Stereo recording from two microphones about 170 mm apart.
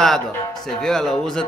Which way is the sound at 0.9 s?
5° left (ahead or behind).